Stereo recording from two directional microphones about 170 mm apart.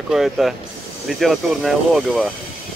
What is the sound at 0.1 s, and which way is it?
Speech, centre (ahead or behind).